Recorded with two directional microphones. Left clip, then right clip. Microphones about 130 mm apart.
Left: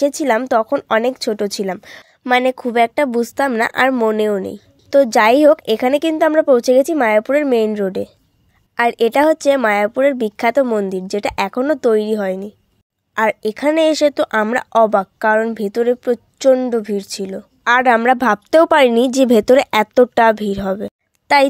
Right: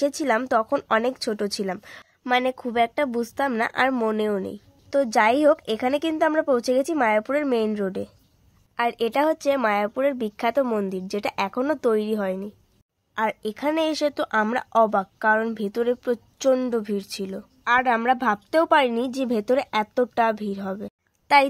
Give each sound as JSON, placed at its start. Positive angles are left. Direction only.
{"t": 0.0, "sound": "a woman's voice", "side_deg": 35}
{"t": 3.9, "sound": "a woman's voice", "side_deg": 35}
{"t": 8.7, "sound": "speech", "side_deg": 50}
{"t": 10.6, "sound": "a woman's voice", "side_deg": 30}
{"t": 10.9, "sound": "a woman's voice", "side_deg": 40}
{"t": 13.1, "sound": "a woman's voice", "side_deg": 50}
{"t": 17.6, "sound": "a woman's voice", "side_deg": 65}